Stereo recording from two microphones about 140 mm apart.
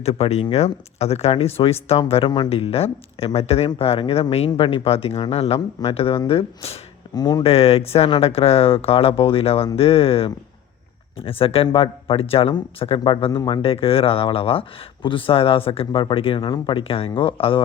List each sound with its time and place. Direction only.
0.0 s speech: 50° left (ahead or behind)
7.1 s speech: 30° left (ahead or behind)
7.4 s speech: 45° left (ahead or behind)